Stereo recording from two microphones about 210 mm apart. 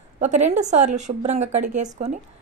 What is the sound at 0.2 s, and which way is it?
A woman's voice, 35° right (ahead or behind).